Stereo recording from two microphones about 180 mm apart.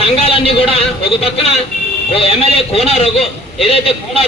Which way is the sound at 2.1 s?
30° left (ahead or behind).